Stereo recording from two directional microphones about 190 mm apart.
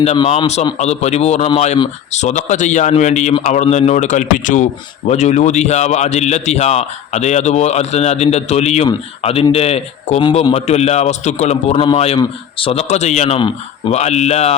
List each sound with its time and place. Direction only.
0.0 s a man's voice: 35° left (ahead or behind)